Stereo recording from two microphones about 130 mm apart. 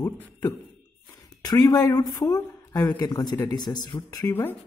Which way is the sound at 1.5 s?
30° left (ahead or behind).